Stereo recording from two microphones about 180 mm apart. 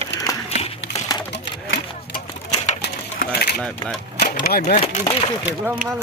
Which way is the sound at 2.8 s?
65° left (ahead or behind).